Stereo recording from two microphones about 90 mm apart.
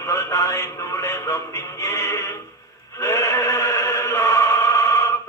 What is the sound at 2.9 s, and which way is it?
Chant, 30° left (ahead or behind).